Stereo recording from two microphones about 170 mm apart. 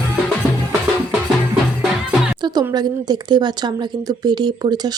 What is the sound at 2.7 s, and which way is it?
Speech, 25° right (ahead or behind).